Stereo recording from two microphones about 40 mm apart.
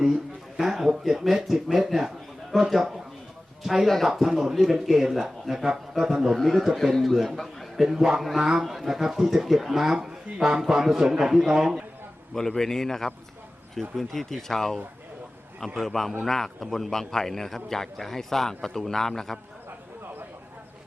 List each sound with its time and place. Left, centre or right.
0.0 s a sound: centre
1.0 s a man's voice: centre
6.1 s a man's voice: centre
6.3 s a man's voice: centre
10.0 s a sound: centre
10.6 s a man's voice: centre
12.3 s a man's voice: centre